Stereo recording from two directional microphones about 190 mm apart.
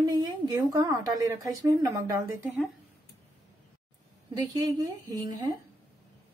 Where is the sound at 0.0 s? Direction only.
20° right (ahead or behind).